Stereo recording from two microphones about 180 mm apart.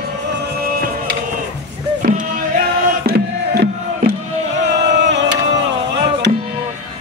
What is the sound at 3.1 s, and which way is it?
Music, 60° right (ahead or behind).